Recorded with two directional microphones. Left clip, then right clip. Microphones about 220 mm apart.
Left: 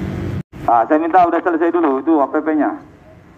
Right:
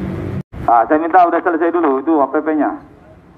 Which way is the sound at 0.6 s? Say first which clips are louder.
Right 1 dB; 15° left (ahead or behind).